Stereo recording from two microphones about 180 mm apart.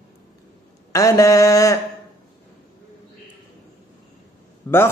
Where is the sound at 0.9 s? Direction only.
20° left (ahead or behind).